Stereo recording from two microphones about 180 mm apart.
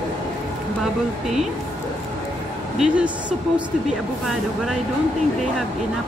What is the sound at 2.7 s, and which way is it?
Speech, 5° right (ahead or behind).